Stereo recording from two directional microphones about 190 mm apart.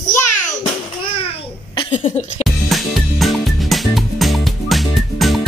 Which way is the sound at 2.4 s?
Centre (ahead or behind).